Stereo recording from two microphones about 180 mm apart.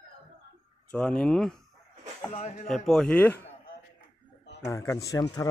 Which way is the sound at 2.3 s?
40° left (ahead or behind).